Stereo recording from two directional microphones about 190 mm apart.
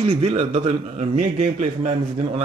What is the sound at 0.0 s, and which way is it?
A man's voice, 30° right (ahead or behind).